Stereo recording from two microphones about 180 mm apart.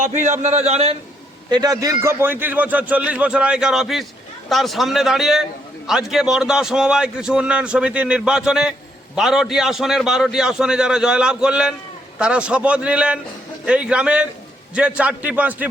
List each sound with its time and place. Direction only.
0.0 s a man's voice: 40° right (ahead or behind)
1.5 s a man's voice: 20° right (ahead or behind)